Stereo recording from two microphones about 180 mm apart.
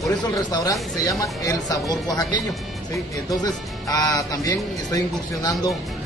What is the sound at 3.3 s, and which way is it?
Speech, 20° left (ahead or behind).